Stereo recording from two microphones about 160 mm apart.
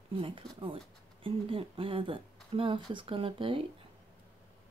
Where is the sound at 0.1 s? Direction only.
30° right (ahead or behind).